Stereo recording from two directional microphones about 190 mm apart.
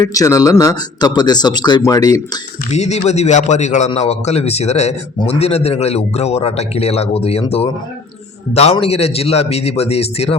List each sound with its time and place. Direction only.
0.0 s speech: 20° left (ahead or behind)
2.6 s a man's voice: 35° left (ahead or behind)
8.8 s a man's voice: 30° left (ahead or behind)